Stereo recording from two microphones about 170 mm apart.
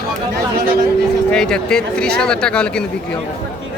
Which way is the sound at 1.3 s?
5° left (ahead or behind).